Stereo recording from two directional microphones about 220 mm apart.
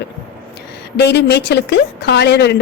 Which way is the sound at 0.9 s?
50° left (ahead or behind).